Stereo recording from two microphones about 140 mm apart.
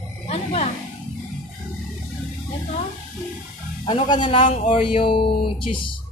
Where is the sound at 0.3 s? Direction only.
45° left (ahead or behind).